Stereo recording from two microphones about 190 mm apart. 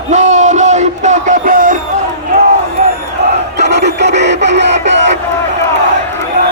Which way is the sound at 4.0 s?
65° right (ahead or behind).